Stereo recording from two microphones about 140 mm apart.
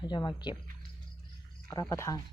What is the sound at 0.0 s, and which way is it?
Speech, 30° left (ahead or behind).